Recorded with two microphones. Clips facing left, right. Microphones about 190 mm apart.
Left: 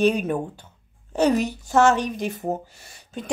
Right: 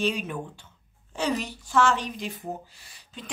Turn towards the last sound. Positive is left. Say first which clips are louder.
# left 9 dB
turn(degrees=45)  # may be behind; listen again after turning